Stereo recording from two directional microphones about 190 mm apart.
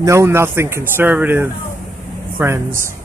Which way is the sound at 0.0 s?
15° right (ahead or behind).